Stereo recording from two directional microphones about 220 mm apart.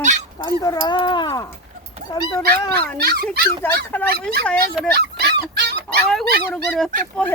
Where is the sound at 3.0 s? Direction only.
45° right (ahead or behind).